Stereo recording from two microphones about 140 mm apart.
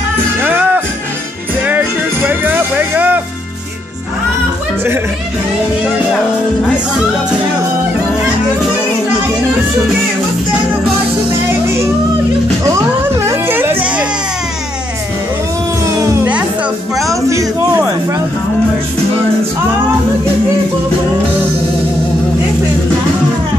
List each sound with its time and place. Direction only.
0.4 s music: 15° right (ahead or behind)
13.3 s music: 15° right (ahead or behind)
17.1 s a sound: 20° right (ahead or behind)